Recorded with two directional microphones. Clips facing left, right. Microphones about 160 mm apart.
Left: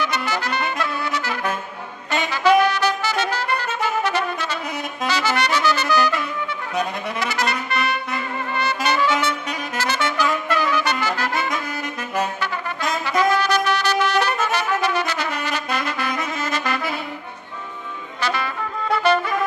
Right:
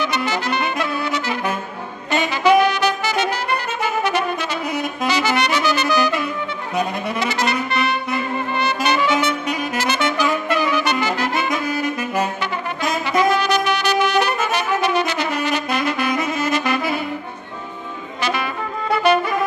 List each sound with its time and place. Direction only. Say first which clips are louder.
0.0 s brass instrument: right 2 dB; 20° right (ahead or behind)
2.2 s music: right 1 dB; 20° right (ahead or behind)
7.2 s trumpet: right 3 dB; 25° right (ahead or behind)
8.5 s brass instrument: right 1 dB; 20° right (ahead or behind)
18.2 s music: right 1 dB; 15° right (ahead or behind)